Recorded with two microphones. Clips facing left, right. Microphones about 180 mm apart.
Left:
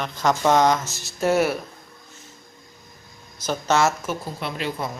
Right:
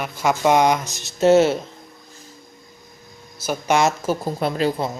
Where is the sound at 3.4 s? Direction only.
10° right (ahead or behind).